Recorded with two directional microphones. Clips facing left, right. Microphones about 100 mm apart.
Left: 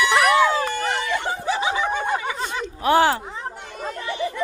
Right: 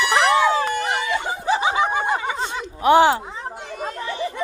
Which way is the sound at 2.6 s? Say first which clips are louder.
Right 3 dB; 20° right (ahead or behind).